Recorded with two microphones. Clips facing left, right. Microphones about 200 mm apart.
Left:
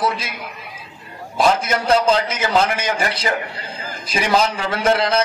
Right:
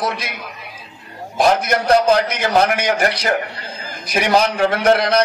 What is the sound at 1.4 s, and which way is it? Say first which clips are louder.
A man's voice: right 2 dB; 60° right (ahead or behind).